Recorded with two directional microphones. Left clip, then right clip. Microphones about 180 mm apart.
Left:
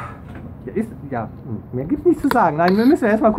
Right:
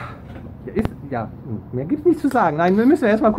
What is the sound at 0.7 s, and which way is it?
Speech, 15° right (ahead or behind).